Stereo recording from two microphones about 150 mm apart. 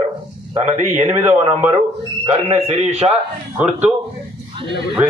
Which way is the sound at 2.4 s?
45° right (ahead or behind).